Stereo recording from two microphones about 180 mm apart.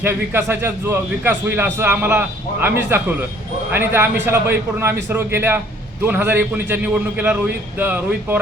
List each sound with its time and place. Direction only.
0.0 s a man's voice: 15° right (ahead or behind)